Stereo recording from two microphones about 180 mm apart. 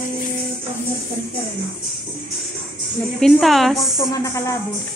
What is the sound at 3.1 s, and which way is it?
Speech, centre (ahead or behind).